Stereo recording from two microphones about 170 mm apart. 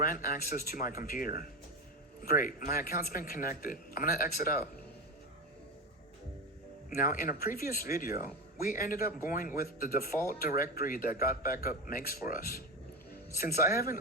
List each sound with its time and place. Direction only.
0.0 s speech: 55° left (ahead or behind)
6.9 s speech: 55° left (ahead or behind)